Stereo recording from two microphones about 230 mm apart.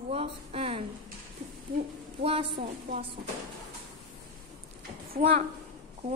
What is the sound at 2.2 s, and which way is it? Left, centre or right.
Speech, right.